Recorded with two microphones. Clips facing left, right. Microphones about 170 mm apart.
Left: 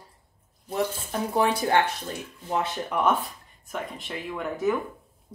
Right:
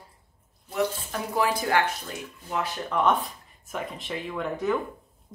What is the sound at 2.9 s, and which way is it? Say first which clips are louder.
Speech: right 1 dB; 5° left (ahead or behind).